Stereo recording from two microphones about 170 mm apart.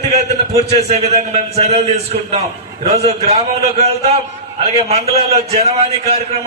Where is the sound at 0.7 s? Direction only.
40° right (ahead or behind).